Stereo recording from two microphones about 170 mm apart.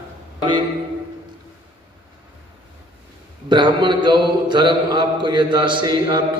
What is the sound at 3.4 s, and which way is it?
A man's voice, 25° right (ahead or behind).